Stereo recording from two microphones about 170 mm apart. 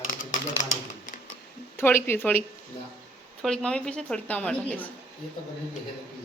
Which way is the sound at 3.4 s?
5° left (ahead or behind).